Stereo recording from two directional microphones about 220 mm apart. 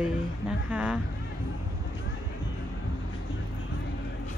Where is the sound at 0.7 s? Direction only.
5° right (ahead or behind).